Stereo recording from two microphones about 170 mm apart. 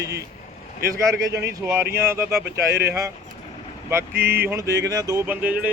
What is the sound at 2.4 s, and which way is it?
Speech, 75° right (ahead or behind).